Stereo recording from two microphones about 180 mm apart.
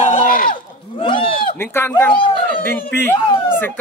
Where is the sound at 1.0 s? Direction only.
30° left (ahead or behind).